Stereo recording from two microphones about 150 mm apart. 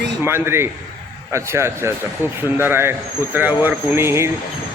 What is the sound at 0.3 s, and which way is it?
A man's voice, 15° right (ahead or behind).